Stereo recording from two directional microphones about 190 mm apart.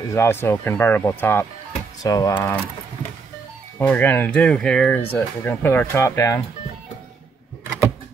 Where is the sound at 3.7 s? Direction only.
10° left (ahead or behind).